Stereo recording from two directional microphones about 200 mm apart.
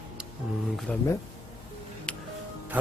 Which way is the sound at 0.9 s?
5° left (ahead or behind).